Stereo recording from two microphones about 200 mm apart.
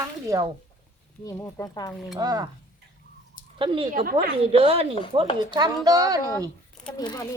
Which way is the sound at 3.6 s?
25° right (ahead or behind).